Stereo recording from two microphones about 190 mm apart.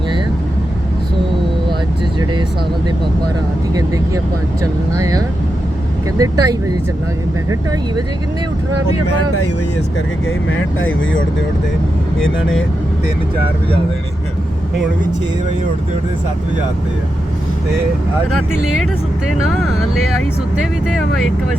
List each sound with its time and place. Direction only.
3.8 s speech: 20° right (ahead or behind)
10.2 s speech: 90° left
12.2 s speech: 80° left
20.8 s speech: centre (ahead or behind)